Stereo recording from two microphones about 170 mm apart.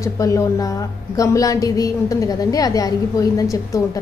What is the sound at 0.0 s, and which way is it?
A woman's voice, 20° left (ahead or behind).